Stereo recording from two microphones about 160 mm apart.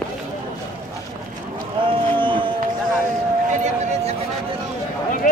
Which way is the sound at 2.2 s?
30° right (ahead or behind).